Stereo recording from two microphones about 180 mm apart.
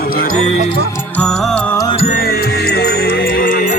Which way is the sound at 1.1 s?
5° left (ahead or behind).